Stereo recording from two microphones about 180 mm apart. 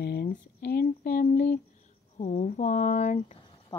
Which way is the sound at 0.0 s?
60° left (ahead or behind).